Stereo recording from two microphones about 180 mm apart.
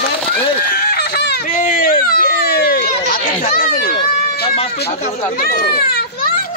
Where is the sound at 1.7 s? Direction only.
50° left (ahead or behind).